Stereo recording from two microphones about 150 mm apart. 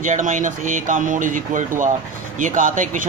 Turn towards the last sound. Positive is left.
turn(degrees=-60)  # may be behind; listen again after turning